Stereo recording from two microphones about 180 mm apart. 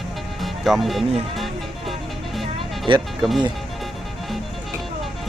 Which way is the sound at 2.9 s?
30° right (ahead or behind).